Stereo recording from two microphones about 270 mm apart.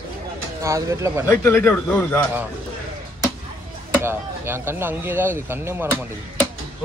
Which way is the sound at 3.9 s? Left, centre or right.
Centre.